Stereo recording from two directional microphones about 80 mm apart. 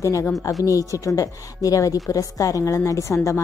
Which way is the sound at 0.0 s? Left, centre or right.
Left.